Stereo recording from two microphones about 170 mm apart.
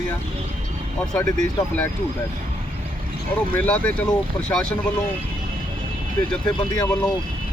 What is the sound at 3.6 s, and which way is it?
A man's voice, 10° left (ahead or behind).